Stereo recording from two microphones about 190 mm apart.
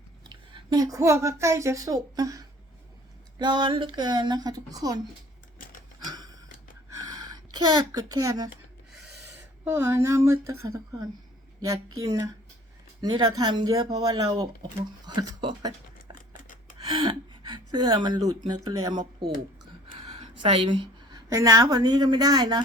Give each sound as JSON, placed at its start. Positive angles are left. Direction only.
{"t": 0.3, "sound": "a woman's voice", "side_deg": -20}
{"t": 7.0, "sound": "a sound", "side_deg": -20}
{"t": 7.9, "sound": "speech", "side_deg": -20}
{"t": 9.6, "sound": "speech", "side_deg": -15}
{"t": 11.9, "sound": "speech", "side_deg": -15}
{"t": 16.3, "sound": "scissors", "side_deg": 45}
{"t": 16.8, "sound": "gasp", "side_deg": -25}
{"t": 18.4, "sound": "speech", "side_deg": -20}
{"t": 20.1, "sound": "a woman's voice", "side_deg": -30}